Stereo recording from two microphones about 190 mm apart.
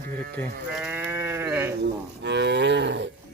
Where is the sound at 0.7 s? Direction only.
10° right (ahead or behind).